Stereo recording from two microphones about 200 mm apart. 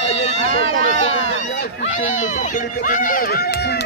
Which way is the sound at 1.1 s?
35° left (ahead or behind).